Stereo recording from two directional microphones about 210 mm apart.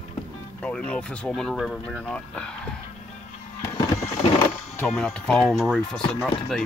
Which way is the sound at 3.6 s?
15° left (ahead or behind).